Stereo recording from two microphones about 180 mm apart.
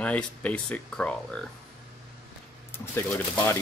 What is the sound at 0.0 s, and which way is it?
Speech, 5° left (ahead or behind).